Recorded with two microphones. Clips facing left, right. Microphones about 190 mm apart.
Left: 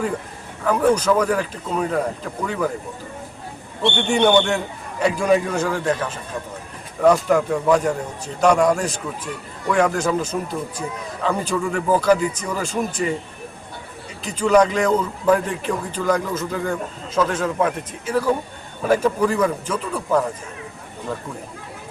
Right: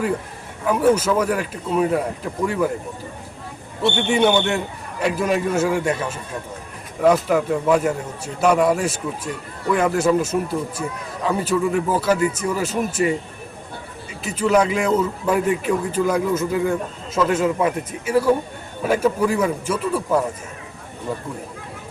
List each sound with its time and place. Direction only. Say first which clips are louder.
0.6 s a man's voice: right 1 dB; 5° right (ahead or behind)
3.8 s a man's voice: even; 5° right (ahead or behind)
14.3 s a man's voice: left 2 dB; 5° right (ahead or behind)